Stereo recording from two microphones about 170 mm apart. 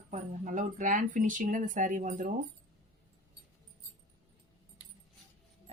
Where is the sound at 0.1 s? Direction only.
50° right (ahead or behind).